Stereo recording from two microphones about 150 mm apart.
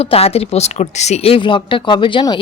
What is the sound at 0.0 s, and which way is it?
Speech, 40° left (ahead or behind).